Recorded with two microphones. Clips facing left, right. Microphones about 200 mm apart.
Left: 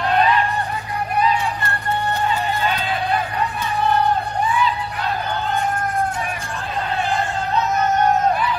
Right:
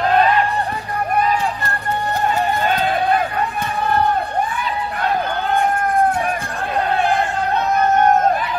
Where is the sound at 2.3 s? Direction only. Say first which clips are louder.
Right 3 dB; 50° right (ahead or behind).